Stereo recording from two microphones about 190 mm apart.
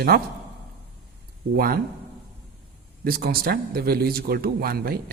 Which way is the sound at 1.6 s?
50° right (ahead or behind).